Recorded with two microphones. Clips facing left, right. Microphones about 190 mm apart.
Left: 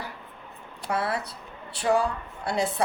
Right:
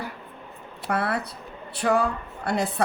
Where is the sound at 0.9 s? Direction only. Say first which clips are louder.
Right 2 dB; 60° right (ahead or behind).